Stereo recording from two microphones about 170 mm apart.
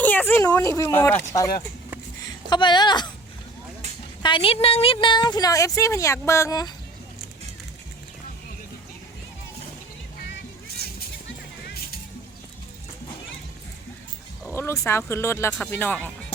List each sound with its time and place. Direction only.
0.0 s speech: 10° left (ahead or behind)
2.5 s a woman's voice: 25° left (ahead or behind)
4.2 s a woman's voice: 30° left (ahead or behind)
11.3 s music: 65° left (ahead or behind)
14.4 s speech: 15° left (ahead or behind)